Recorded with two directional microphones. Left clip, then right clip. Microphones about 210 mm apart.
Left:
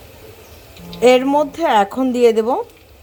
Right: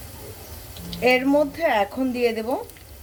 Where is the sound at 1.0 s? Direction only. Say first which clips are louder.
Left 6 dB; 30° left (ahead or behind).